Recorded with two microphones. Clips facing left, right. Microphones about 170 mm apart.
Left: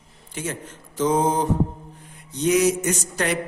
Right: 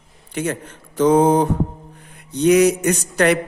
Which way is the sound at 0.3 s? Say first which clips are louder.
Right 7 dB; 60° right (ahead or behind).